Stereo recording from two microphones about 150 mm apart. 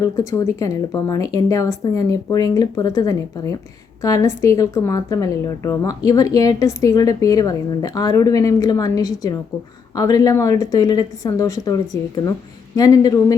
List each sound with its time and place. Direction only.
0.0 s speech: 20° left (ahead or behind)